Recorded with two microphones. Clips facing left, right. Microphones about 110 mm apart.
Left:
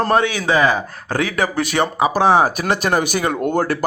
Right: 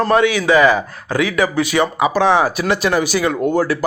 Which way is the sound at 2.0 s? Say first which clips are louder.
Left 1 dB; 40° left (ahead or behind).